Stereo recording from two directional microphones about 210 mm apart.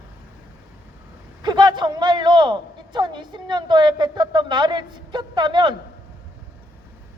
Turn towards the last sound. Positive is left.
turn(degrees=-20)  # may be behind; listen again after turning